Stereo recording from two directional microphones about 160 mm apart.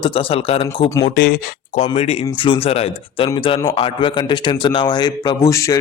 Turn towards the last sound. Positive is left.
turn(degrees=20)  # may be behind; listen again after turning